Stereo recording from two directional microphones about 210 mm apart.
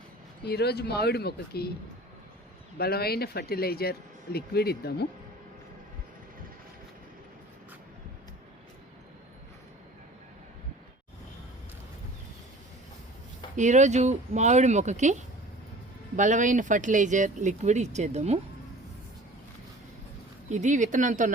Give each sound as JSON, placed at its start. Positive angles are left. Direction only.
{"t": 0.4, "sound": "speech", "side_deg": 50}
{"t": 2.7, "sound": "speech", "side_deg": 50}
{"t": 13.6, "sound": "speech", "side_deg": -35}
{"t": 20.5, "sound": "speech", "side_deg": -35}